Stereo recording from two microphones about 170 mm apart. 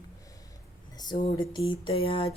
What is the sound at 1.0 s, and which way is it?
Speech, 25° left (ahead or behind).